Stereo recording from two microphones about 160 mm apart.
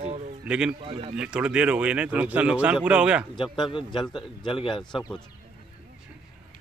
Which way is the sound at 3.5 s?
30° left (ahead or behind).